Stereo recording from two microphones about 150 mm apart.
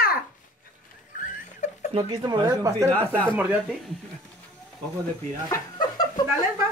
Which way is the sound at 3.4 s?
10° right (ahead or behind).